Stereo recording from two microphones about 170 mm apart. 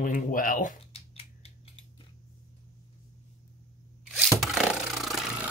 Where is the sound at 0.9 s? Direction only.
35° left (ahead or behind).